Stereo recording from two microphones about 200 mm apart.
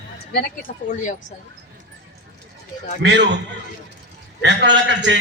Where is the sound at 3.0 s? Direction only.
60° right (ahead or behind).